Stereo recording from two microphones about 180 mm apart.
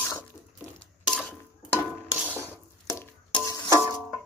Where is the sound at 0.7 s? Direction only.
5° left (ahead or behind).